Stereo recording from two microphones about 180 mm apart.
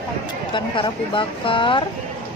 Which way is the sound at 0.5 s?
25° left (ahead or behind).